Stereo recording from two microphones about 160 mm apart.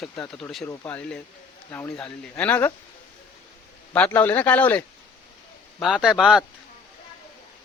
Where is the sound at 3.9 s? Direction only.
10° left (ahead or behind).